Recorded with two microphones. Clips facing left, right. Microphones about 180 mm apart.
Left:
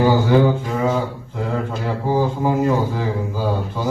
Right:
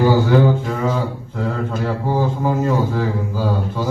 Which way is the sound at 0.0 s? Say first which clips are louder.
Even; 10° left (ahead or behind).